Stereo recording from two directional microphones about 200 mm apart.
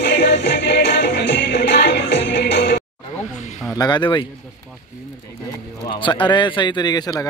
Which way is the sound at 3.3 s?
35° left (ahead or behind).